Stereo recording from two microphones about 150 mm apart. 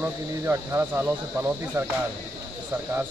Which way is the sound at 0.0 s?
15° right (ahead or behind).